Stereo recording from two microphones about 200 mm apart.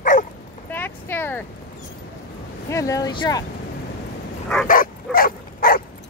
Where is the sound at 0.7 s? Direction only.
10° left (ahead or behind).